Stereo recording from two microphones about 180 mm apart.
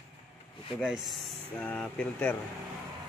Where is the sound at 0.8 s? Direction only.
Centre (ahead or behind).